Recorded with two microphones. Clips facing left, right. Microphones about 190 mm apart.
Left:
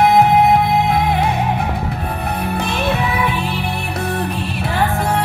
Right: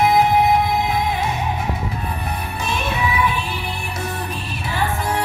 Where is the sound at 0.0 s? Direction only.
60° left (ahead or behind).